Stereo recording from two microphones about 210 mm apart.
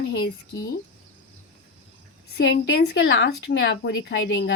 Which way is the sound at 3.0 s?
60° left (ahead or behind).